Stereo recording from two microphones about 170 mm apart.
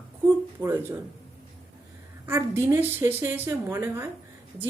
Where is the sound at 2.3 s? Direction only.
15° right (ahead or behind).